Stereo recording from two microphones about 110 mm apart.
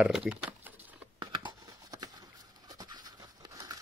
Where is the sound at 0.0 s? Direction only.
10° right (ahead or behind).